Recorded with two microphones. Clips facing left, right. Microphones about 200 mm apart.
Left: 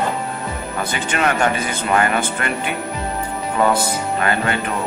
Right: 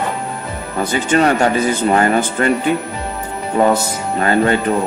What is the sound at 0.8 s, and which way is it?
Speech, 40° right (ahead or behind).